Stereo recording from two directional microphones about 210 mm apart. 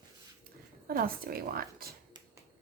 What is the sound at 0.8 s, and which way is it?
Speech, 45° right (ahead or behind).